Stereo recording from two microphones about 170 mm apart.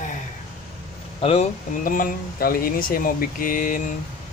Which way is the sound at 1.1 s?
40° left (ahead or behind).